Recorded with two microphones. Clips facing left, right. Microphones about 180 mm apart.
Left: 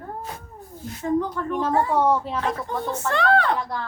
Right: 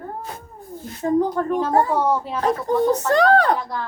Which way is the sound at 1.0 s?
40° right (ahead or behind).